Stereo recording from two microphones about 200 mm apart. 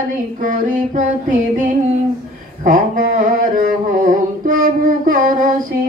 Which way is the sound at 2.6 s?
45° right (ahead or behind).